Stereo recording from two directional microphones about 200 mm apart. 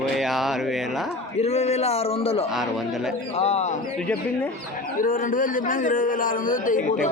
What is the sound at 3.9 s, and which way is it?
Speech, 10° left (ahead or behind).